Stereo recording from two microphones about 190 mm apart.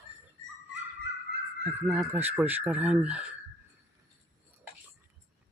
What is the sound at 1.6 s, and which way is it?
Speech, 5° right (ahead or behind).